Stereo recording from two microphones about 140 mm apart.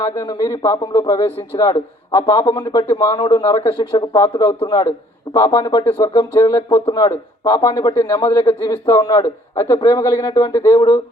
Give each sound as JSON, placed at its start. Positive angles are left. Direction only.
{"t": 0.0, "sound": "speech", "side_deg": 25}